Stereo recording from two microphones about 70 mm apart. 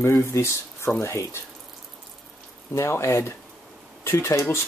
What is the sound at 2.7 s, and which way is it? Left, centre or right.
Speech, left.